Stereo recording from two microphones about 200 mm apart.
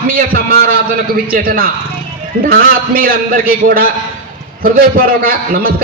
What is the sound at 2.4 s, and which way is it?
A man's voice, 45° right (ahead or behind).